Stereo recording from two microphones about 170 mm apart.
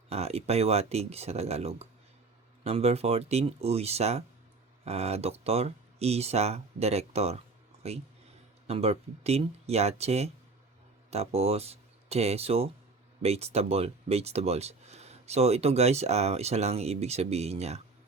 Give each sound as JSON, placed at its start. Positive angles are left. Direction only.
{"t": 0.1, "sound": "speech", "side_deg": -40}